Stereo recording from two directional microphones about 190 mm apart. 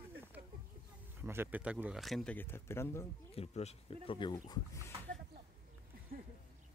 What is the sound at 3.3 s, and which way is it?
Speech, 30° left (ahead or behind).